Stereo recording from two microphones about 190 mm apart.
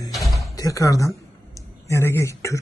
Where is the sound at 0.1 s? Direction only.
Centre (ahead or behind).